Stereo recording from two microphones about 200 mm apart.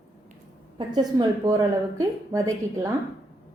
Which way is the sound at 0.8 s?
20° right (ahead or behind).